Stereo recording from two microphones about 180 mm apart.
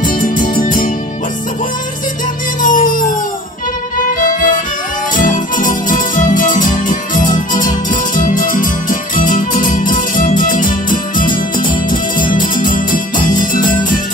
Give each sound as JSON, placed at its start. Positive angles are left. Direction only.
{"t": 0.0, "sound": "music", "side_deg": 50}
{"t": 2.6, "sound": "music", "side_deg": 50}
{"t": 4.2, "sound": "music", "side_deg": 50}